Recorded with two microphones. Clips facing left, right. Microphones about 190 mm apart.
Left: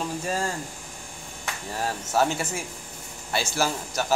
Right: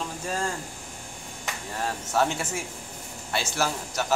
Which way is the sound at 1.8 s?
5° left (ahead or behind).